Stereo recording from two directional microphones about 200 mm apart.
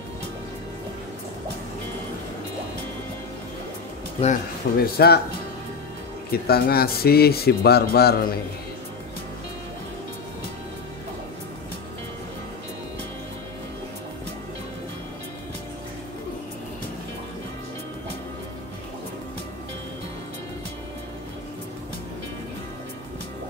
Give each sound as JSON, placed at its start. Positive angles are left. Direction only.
{"t": 4.2, "sound": "speech", "side_deg": 45}
{"t": 6.3, "sound": "speech", "side_deg": 50}